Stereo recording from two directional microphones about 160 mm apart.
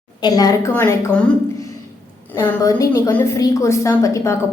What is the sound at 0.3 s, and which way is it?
Speech, 25° left (ahead or behind).